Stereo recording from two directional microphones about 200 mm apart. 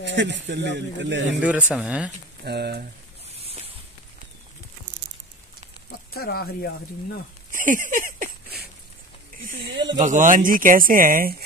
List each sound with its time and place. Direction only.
0.0 s a man's voice: 65° right (ahead or behind)
1.4 s speech: 5° right (ahead or behind)
2.4 s a man's voice: 55° right (ahead or behind)
5.9 s speech: 50° left (ahead or behind)
7.5 s a sound: 40° right (ahead or behind)
9.9 s speech: 40° right (ahead or behind)